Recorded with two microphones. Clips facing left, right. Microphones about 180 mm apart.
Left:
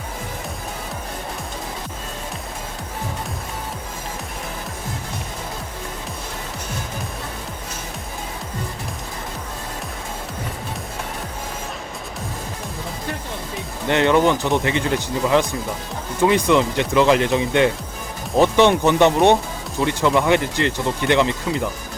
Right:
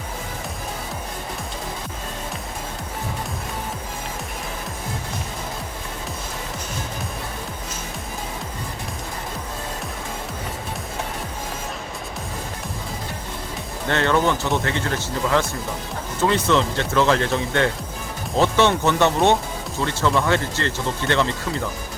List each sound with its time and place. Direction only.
13.8 s speech: 15° left (ahead or behind)